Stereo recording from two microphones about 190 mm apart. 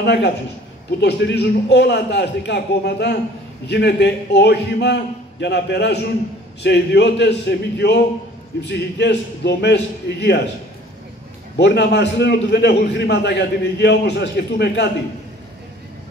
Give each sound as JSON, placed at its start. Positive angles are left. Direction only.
{"t": 0.0, "sound": "a man's voice", "side_deg": 60}
{"t": 11.5, "sound": "a man's voice", "side_deg": 60}